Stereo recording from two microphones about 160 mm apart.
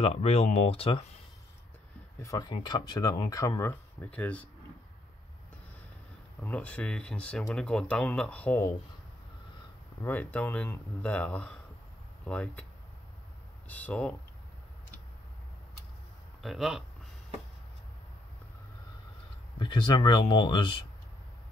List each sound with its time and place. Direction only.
0.0 s speech: 40° left (ahead or behind)
2.2 s speech: 25° left (ahead or behind)
6.4 s speech: 10° left (ahead or behind)
10.0 s speech: 10° left (ahead or behind)
13.7 s speech: 10° left (ahead or behind)
16.4 s speech: centre (ahead or behind)
19.6 s speech: 30° left (ahead or behind)